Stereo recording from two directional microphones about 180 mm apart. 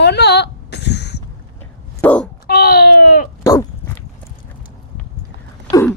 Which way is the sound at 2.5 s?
60° left (ahead or behind).